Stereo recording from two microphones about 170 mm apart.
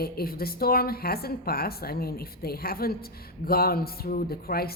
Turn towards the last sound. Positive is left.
turn(degrees=65)  # may be behind; listen again after turning